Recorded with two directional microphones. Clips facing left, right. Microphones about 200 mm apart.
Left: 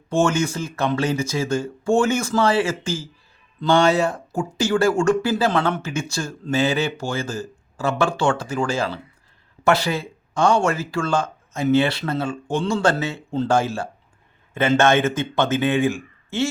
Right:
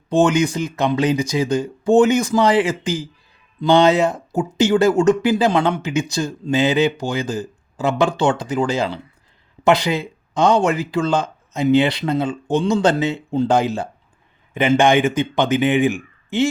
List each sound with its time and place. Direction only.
0.1 s speech: 15° right (ahead or behind)